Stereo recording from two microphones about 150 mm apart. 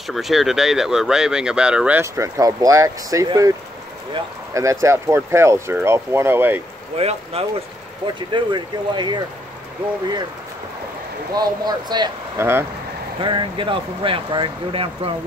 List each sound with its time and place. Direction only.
0.0 s speech: centre (ahead or behind); by 3.5 s 25° right (ahead or behind)
4.6 s speech: 20° right (ahead or behind)
7.0 s speech: 40° right (ahead or behind)
8.3 s speech: 30° right (ahead or behind)
11.3 s speech: 30° right (ahead or behind)
12.4 s speech: 15° right (ahead or behind)
13.2 s speech: 35° right (ahead or behind)